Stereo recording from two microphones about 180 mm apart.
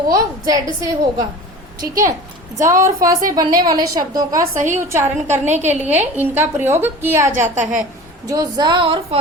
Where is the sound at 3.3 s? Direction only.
20° right (ahead or behind).